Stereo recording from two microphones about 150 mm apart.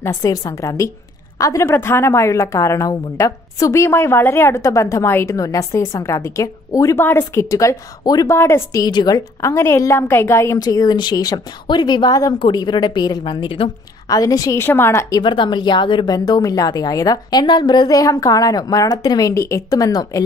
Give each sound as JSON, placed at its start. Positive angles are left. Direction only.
{"t": 0.0, "sound": "a woman's voice", "side_deg": 25}
{"t": 14.0, "sound": "a woman's voice", "side_deg": 25}